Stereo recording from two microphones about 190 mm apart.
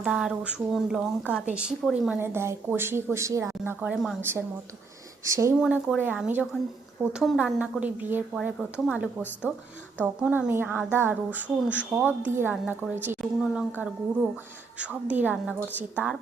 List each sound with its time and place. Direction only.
0.0 s a woman's voice: 5° right (ahead or behind)
1.5 s speech: 5° right (ahead or behind)
5.5 s a woman's voice: 5° right (ahead or behind)